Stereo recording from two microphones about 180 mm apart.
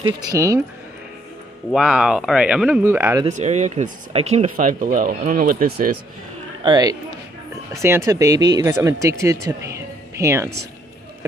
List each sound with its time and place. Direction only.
0.0 s speech: 20° right (ahead or behind)
1.7 s speech: 5° right (ahead or behind)
3.3 s speech: 40° right (ahead or behind)
6.6 s speech: 20° right (ahead or behind)